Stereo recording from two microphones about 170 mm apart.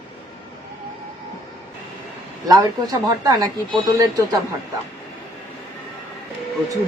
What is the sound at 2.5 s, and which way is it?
Speech, 25° right (ahead or behind).